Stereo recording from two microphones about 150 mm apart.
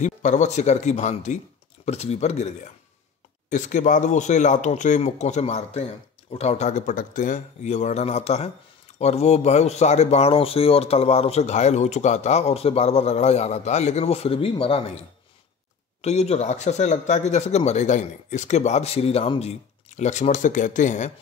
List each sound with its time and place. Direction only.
0.0 s speech: 55° left (ahead or behind)
16.0 s speech: 45° left (ahead or behind)